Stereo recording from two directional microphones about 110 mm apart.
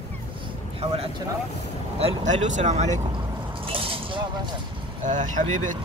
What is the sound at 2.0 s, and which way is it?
Speech, 75° right (ahead or behind).